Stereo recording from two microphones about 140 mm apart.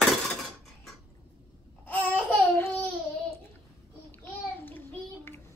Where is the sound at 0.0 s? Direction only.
Centre (ahead or behind).